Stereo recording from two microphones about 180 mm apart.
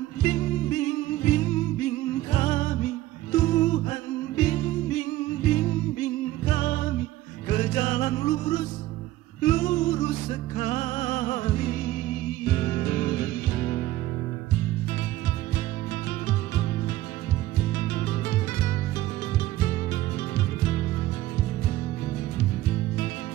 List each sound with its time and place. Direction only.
0.2 s music: 40° left (ahead or behind)
17.7 s music: 40° left (ahead or behind)